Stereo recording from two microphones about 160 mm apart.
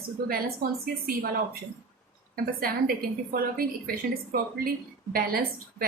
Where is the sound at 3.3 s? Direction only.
65° right (ahead or behind).